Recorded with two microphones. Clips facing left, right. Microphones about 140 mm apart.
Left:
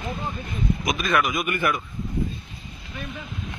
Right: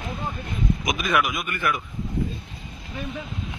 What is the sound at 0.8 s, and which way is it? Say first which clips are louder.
Speech: left 1 dB; 10° right (ahead or behind).